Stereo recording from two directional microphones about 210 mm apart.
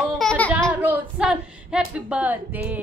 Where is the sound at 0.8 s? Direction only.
5° right (ahead or behind).